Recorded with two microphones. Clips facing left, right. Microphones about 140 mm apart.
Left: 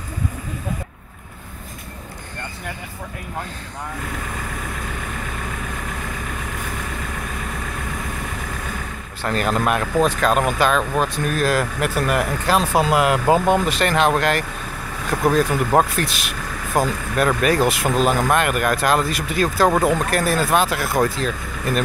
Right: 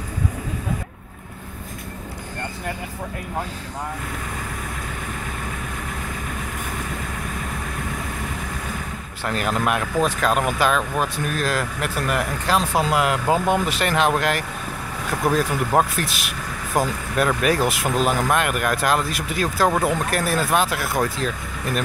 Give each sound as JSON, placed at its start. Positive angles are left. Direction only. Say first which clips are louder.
{"t": 9.2, "sound": "speech", "louder": "left 2 dB", "side_deg": -5}
{"t": 19.7, "sound": "speech", "louder": "left 3 dB", "side_deg": 20}
{"t": 20.0, "sound": "speech", "louder": "left 2 dB", "side_deg": 0}